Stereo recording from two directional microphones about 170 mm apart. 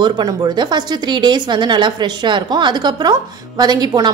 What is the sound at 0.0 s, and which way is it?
Speech, 25° right (ahead or behind).